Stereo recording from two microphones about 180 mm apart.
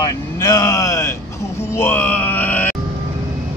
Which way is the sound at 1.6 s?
15° left (ahead or behind).